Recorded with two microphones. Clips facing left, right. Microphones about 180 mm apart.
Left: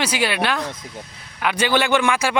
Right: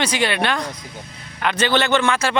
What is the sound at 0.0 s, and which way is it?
A man's voice, 5° left (ahead or behind).